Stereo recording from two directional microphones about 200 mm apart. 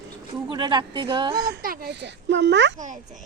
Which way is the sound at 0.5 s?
20° right (ahead or behind).